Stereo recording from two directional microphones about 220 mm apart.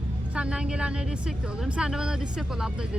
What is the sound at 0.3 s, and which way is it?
Speech, 5° right (ahead or behind).